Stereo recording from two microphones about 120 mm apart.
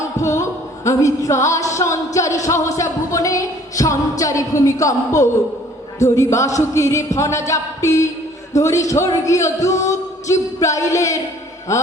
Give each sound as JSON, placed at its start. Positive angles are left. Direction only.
{"t": 0.2, "sound": "music", "side_deg": 25}
{"t": 6.1, "sound": "music", "side_deg": 25}